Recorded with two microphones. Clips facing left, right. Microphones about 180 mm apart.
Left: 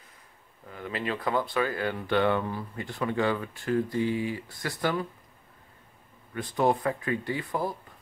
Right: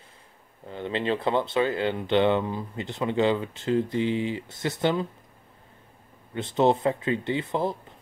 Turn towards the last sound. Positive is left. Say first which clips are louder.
# right 4 dB
turn(degrees=-25)  # may be behind; listen again after turning